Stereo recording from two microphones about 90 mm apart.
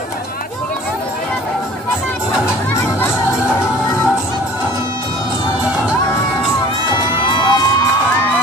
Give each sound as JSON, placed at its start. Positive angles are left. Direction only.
{"t": 7.0, "sound": "crowd", "side_deg": 60}